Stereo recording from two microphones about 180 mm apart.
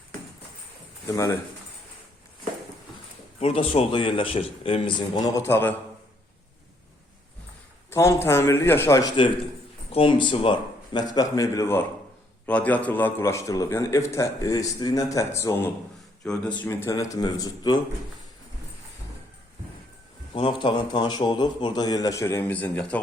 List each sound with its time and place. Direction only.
1.0 s a man's voice: 15° left (ahead or behind)
3.4 s a man's voice: 30° left (ahead or behind); by 5.7 s 15° left (ahead or behind)
7.9 s a man's voice: 15° left (ahead or behind)
16.6 s a man's voice: 15° left (ahead or behind)
20.3 s a man's voice: 30° left (ahead or behind); by 23.0 s 10° left (ahead or behind)